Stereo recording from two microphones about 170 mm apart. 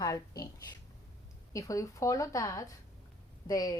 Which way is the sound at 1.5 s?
20° left (ahead or behind).